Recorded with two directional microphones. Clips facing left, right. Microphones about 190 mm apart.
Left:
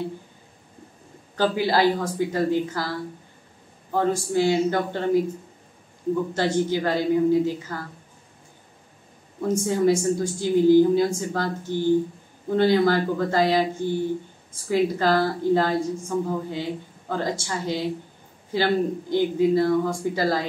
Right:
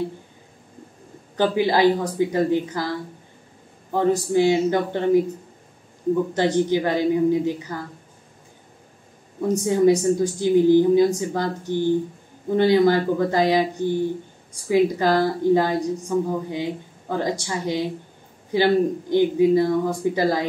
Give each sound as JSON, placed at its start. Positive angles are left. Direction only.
{"t": 1.3, "sound": "a woman's voice", "side_deg": -15}
{"t": 3.9, "sound": "a woman's voice", "side_deg": -15}
{"t": 6.3, "sound": "a woman's voice", "side_deg": -20}
{"t": 9.5, "sound": "a woman's voice", "side_deg": -20}